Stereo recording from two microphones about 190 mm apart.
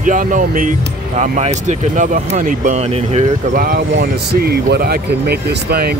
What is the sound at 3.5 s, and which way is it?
Speech, 50° right (ahead or behind).